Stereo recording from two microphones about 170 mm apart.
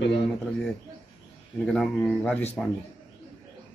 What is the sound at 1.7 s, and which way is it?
Speech, 5° left (ahead or behind).